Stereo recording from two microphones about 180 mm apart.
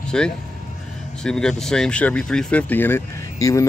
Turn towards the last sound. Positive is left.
turn(degrees=15)  # may be behind; listen again after turning